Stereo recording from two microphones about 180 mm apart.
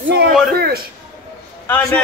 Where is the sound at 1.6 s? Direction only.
10° left (ahead or behind).